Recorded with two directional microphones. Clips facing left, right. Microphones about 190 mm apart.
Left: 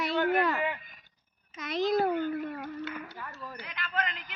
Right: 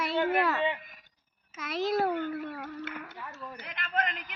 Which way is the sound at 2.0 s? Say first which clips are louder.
Left 2 dB; 10° left (ahead or behind).